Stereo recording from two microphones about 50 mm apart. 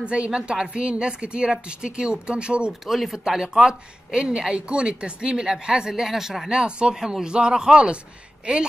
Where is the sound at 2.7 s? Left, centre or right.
Centre.